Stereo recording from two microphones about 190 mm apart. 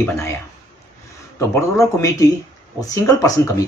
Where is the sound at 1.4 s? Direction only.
15° left (ahead or behind).